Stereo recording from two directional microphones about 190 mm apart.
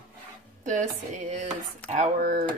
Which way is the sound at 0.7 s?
40° right (ahead or behind).